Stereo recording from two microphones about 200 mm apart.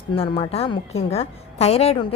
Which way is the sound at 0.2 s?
30° left (ahead or behind).